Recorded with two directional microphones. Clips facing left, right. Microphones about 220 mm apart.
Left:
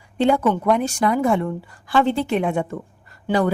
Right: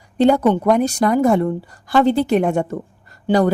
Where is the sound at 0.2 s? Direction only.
40° right (ahead or behind).